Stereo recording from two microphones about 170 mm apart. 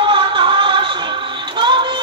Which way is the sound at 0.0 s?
30° right (ahead or behind).